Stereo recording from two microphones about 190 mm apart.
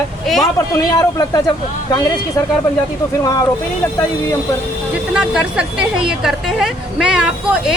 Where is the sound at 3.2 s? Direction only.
15° left (ahead or behind).